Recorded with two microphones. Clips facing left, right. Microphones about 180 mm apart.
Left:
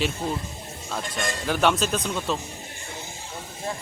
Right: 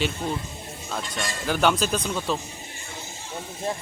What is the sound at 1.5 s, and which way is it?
Speech, centre (ahead or behind).